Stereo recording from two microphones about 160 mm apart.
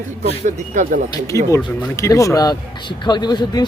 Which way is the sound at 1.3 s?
20° left (ahead or behind).